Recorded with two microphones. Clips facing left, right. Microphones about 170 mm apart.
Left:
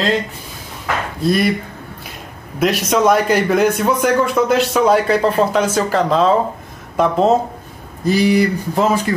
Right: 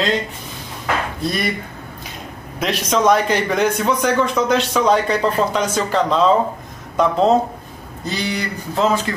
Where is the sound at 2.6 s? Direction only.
5° left (ahead or behind).